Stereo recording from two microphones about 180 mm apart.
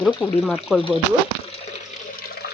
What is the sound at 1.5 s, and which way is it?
Water, 35° left (ahead or behind).